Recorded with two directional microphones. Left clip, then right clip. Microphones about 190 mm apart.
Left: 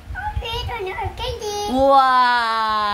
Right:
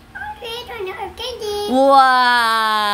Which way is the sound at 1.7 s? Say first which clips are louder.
Right 3 dB; 25° right (ahead or behind).